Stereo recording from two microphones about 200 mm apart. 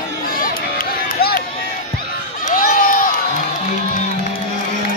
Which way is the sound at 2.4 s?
40° left (ahead or behind).